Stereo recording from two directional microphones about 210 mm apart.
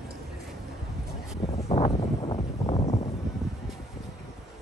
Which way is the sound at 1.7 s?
25° left (ahead or behind).